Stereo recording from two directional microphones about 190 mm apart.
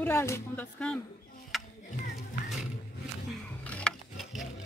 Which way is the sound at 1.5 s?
Centre (ahead or behind).